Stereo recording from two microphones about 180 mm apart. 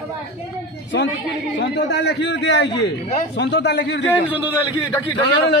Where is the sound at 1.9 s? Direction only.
75° left (ahead or behind).